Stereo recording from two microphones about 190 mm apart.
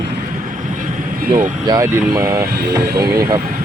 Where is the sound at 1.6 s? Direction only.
20° right (ahead or behind).